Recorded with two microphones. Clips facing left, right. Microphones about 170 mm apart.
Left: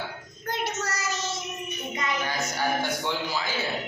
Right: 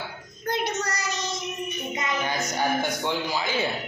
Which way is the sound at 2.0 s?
20° right (ahead or behind).